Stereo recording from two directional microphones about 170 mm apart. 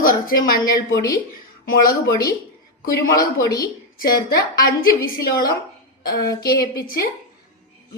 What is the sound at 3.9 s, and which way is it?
A woman's voice, 60° left (ahead or behind).